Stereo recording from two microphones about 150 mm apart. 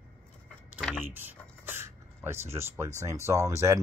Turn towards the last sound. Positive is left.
turn(degrees=-20)  # may be behind; listen again after turning